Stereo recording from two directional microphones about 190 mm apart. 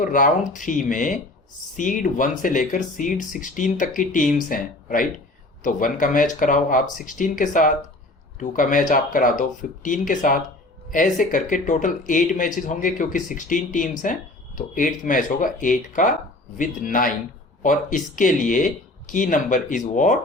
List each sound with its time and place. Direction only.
0.0 s speech: 45° left (ahead or behind)